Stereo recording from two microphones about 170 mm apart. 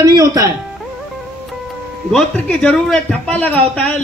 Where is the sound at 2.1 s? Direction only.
5° left (ahead or behind).